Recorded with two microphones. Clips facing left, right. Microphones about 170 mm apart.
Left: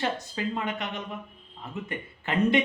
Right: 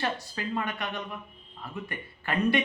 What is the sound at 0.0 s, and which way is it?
Speech, 20° left (ahead or behind).